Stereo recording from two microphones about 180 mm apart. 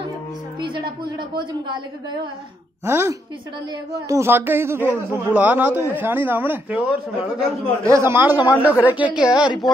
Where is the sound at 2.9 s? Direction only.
15° right (ahead or behind).